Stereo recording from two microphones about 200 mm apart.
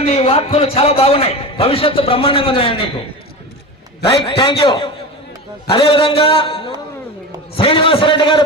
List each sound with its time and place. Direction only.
0.0 s a man's voice: 30° left (ahead or behind)
4.0 s a man's voice: 25° left (ahead or behind)